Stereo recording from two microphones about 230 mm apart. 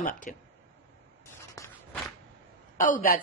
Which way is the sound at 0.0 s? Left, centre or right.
Left.